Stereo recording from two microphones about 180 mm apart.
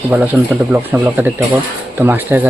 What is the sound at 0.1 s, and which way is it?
Speech, 10° right (ahead or behind).